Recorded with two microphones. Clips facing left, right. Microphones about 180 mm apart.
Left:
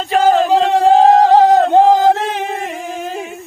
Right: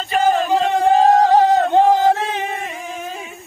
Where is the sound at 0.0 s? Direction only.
90° left.